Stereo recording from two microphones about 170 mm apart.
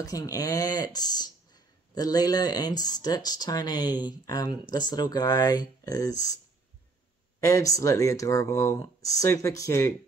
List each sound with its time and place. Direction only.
0.0 s speech: 20° left (ahead or behind)